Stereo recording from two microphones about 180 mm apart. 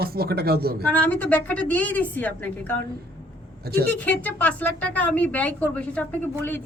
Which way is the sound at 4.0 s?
10° left (ahead or behind).